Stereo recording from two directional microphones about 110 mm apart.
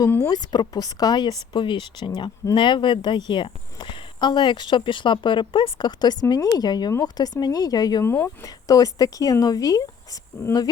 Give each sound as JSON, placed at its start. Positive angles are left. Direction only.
{"t": 0.3, "sound": "speech", "side_deg": 40}
{"t": 8.0, "sound": "speech", "side_deg": 20}
{"t": 8.4, "sound": "speech", "side_deg": 35}